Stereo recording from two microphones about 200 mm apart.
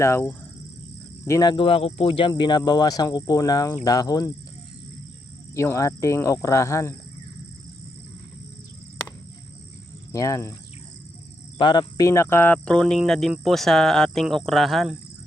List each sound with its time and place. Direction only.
0.0 s speech: 10° left (ahead or behind)
5.5 s speech: 15° left (ahead or behind)
10.1 s speech: 15° left (ahead or behind)
11.5 s speech: 20° left (ahead or behind); by 14.9 s centre (ahead or behind)